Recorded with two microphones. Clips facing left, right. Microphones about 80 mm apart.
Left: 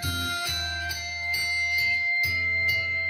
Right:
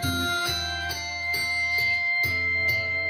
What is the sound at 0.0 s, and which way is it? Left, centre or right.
Music, right.